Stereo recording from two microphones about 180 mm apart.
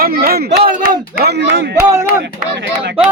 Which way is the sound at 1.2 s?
70° right (ahead or behind).